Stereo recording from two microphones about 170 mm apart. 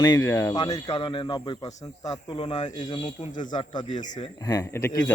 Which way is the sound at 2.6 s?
45° left (ahead or behind).